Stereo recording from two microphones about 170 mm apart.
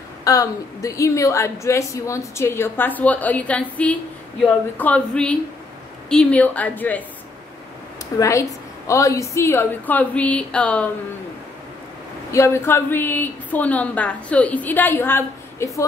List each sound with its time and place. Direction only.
0.2 s a woman's voice: 20° left (ahead or behind)
8.2 s a woman's voice: 20° left (ahead or behind)
12.3 s a woman's voice: 15° left (ahead or behind)